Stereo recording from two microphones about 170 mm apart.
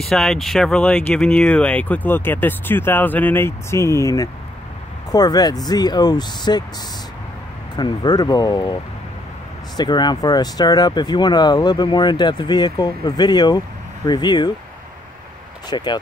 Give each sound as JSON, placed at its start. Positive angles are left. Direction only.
{"t": 0.0, "sound": "speech", "side_deg": 0}
{"t": 7.7, "sound": "speech", "side_deg": 25}
{"t": 9.8, "sound": "speech", "side_deg": 25}
{"t": 15.7, "sound": "speech", "side_deg": 25}